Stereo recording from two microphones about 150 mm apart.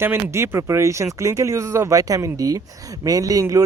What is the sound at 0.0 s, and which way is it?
Speech, 15° right (ahead or behind).